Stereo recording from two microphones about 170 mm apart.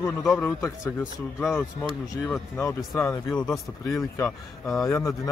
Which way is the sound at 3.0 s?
15° left (ahead or behind).